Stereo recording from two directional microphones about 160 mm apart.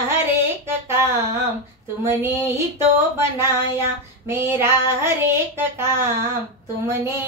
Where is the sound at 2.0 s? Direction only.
15° right (ahead or behind).